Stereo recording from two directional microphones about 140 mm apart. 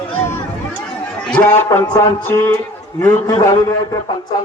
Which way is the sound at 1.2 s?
10° left (ahead or behind).